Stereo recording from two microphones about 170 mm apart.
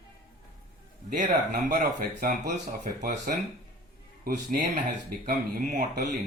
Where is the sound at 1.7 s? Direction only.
50° right (ahead or behind).